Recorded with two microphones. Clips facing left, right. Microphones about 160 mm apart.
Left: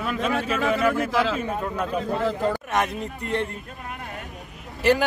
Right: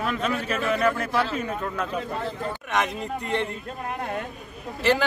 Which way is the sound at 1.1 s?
90° left.